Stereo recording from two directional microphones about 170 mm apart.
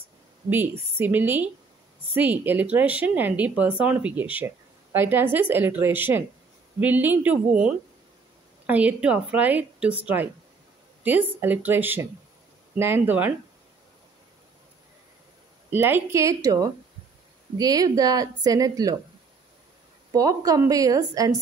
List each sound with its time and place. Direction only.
0.5 s a woman's voice: 10° right (ahead or behind)
15.7 s a woman's voice: 10° right (ahead or behind)
20.1 s a woman's voice: 20° right (ahead or behind)